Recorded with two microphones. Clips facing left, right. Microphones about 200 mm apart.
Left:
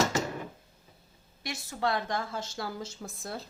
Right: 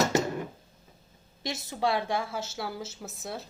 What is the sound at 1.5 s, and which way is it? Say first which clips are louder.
A woman's voice: right 2 dB; 15° right (ahead or behind).